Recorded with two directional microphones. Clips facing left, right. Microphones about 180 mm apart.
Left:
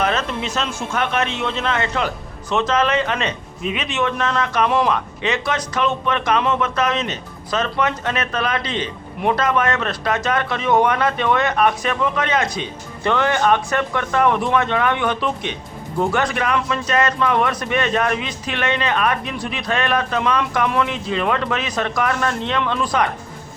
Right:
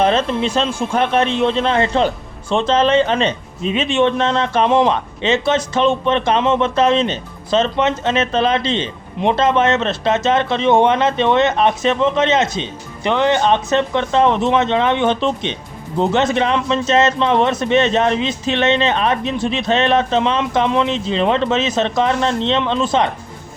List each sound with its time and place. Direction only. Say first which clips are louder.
0.0 s speech: right 6 dB; 30° right (ahead or behind)